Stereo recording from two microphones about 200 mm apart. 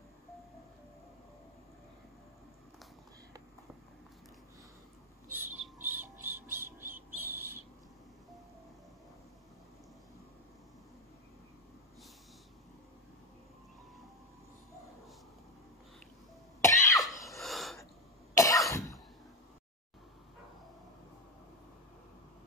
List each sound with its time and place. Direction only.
5.3 s music: 10° right (ahead or behind)
7.2 s bird: 10° right (ahead or behind)
16.6 s cough: 15° left (ahead or behind)
16.9 s cough: centre (ahead or behind)
17.4 s a sound: centre (ahead or behind)
18.3 s cough: 15° left (ahead or behind)